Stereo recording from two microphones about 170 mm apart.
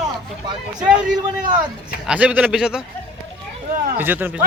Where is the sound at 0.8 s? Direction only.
5° right (ahead or behind).